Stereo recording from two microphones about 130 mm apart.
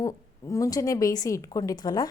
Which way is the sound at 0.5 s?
25° left (ahead or behind).